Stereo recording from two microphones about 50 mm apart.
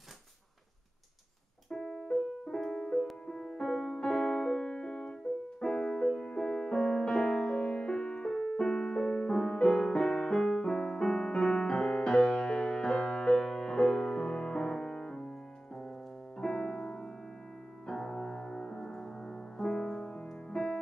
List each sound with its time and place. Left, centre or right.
1.7 s piano: centre
3.3 s music: centre
16.3 s piano: centre
17.8 s music: centre